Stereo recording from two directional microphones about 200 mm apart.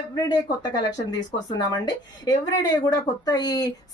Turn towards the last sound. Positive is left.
turn(degrees=20)  # may be behind; listen again after turning